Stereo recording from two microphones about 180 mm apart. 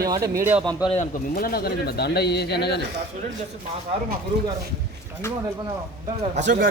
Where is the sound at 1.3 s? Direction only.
55° left (ahead or behind).